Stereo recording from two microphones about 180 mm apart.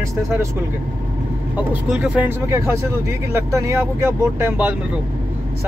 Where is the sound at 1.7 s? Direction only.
5° right (ahead or behind).